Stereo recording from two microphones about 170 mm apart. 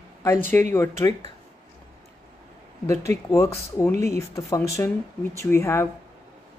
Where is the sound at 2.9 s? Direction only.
15° left (ahead or behind).